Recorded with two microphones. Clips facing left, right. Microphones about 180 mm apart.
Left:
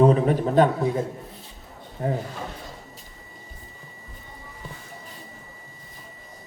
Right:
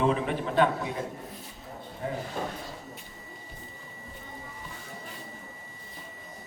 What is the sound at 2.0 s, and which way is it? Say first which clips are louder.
Speech: left 7 dB; 45° left (ahead or behind).